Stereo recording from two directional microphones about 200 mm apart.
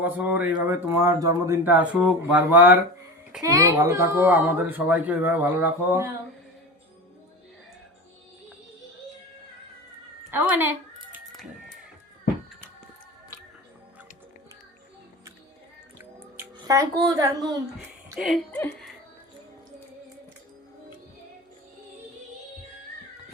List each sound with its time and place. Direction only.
0.0 s speech: 10° right (ahead or behind)
16.0 s a sound: 15° right (ahead or behind)
18.2 s speech: 5° left (ahead or behind)